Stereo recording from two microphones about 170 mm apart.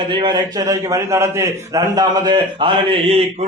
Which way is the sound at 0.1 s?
25° right (ahead or behind).